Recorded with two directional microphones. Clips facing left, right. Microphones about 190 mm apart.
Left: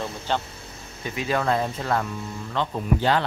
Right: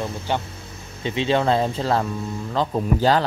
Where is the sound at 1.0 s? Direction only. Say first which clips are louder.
Right 5 dB; 25° right (ahead or behind).